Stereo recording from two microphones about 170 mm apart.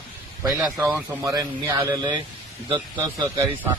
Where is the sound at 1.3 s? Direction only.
20° right (ahead or behind).